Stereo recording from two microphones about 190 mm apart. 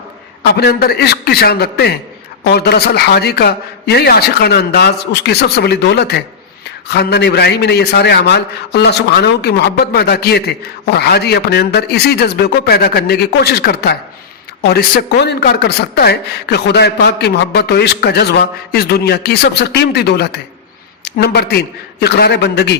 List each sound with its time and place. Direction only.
0.5 s a man's voice: 60° left (ahead or behind)